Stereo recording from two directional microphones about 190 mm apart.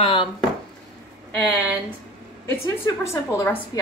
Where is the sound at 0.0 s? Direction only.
30° left (ahead or behind).